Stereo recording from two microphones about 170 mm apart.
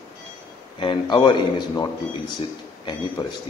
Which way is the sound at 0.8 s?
30° left (ahead or behind).